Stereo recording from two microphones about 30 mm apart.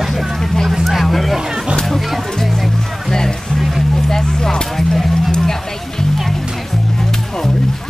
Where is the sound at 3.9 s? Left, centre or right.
Centre.